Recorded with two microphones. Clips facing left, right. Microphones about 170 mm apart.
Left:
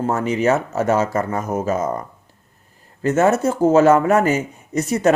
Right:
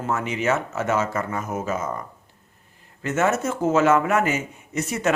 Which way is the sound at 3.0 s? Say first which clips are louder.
Left 6 dB; 35° left (ahead or behind).